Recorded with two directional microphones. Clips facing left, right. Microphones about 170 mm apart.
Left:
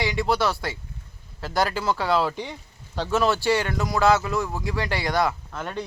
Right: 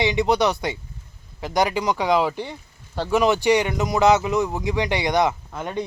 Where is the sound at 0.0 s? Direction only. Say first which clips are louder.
Right 4 dB; 20° right (ahead or behind).